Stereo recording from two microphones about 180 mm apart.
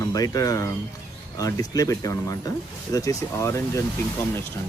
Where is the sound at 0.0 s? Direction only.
20° left (ahead or behind).